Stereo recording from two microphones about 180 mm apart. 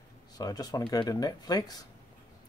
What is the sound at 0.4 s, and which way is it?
Speech, 20° left (ahead or behind).